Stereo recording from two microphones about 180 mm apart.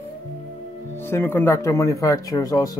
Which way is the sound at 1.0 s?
15° left (ahead or behind).